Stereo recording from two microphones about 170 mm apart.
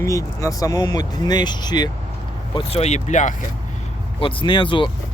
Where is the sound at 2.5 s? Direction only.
35° left (ahead or behind).